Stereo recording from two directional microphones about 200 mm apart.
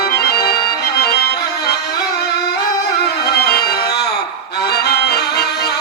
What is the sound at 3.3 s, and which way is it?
Music, 55° left (ahead or behind).